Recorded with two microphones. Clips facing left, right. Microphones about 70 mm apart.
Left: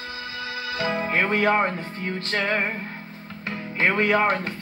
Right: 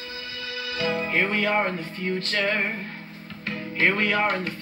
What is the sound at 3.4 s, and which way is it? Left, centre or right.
Speech, left.